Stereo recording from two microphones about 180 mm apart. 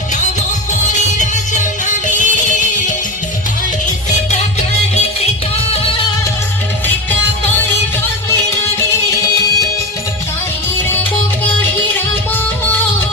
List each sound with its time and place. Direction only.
2.0 s music: 45° left (ahead or behind)